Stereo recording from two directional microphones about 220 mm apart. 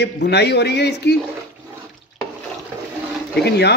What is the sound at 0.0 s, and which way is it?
Speech, 50° left (ahead or behind).